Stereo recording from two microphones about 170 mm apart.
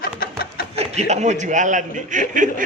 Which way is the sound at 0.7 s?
40° right (ahead or behind).